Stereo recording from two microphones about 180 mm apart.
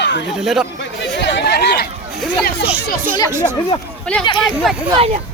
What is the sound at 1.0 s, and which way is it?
Speech, 75° left (ahead or behind).